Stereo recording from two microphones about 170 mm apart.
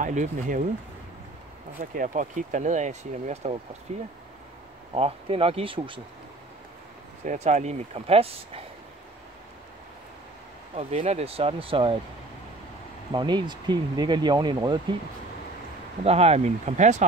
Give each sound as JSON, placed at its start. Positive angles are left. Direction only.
{"t": 0.0, "sound": "speech", "side_deg": -50}
{"t": 1.8, "sound": "speech", "side_deg": -50}
{"t": 7.2, "sound": "speech", "side_deg": -45}
{"t": 10.8, "sound": "speech", "side_deg": -35}
{"t": 13.1, "sound": "speech", "side_deg": -25}
{"t": 16.0, "sound": "speech", "side_deg": -40}